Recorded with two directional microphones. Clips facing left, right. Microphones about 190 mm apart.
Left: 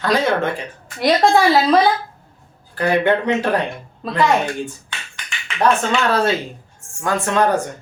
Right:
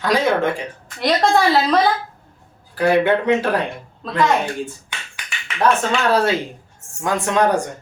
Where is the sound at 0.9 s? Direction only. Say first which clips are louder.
Left 2 dB; 5° left (ahead or behind).